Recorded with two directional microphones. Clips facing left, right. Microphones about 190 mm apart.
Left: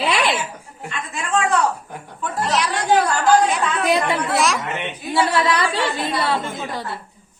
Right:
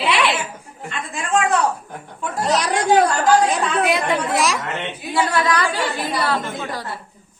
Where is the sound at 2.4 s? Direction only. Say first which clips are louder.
Right 3 dB; 40° right (ahead or behind).